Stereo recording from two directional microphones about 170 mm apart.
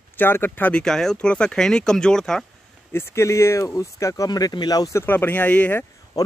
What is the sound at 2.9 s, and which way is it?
Speech, 15° left (ahead or behind).